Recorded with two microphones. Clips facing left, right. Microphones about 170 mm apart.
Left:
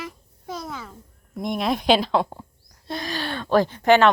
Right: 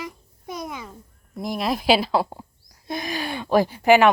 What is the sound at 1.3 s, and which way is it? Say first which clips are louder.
A woman's voice: left 1 dB; centre (ahead or behind).